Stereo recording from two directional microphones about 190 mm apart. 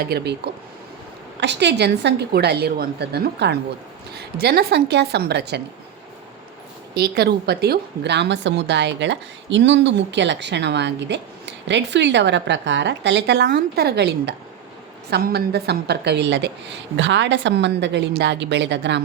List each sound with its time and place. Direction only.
0.0 s a woman's voice: 60° right (ahead or behind)
6.9 s a woman's voice: 55° right (ahead or behind)